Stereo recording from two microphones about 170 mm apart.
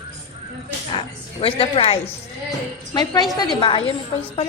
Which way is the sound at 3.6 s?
30° left (ahead or behind).